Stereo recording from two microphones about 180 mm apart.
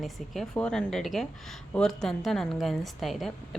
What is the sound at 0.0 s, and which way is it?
A woman's voice, centre (ahead or behind).